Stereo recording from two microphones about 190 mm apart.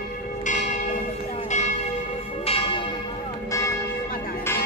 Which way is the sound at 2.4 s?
30° left (ahead or behind).